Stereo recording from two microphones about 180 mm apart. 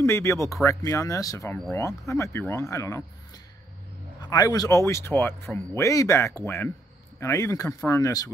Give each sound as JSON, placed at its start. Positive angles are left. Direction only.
{"t": 0.0, "sound": "speech", "side_deg": 15}
{"t": 4.2, "sound": "speech", "side_deg": 20}